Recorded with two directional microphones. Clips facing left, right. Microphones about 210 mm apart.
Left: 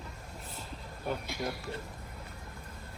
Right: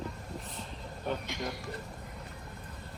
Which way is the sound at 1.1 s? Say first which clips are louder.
Even; 5° left (ahead or behind).